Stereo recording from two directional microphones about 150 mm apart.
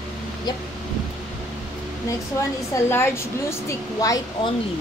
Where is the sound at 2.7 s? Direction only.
15° left (ahead or behind).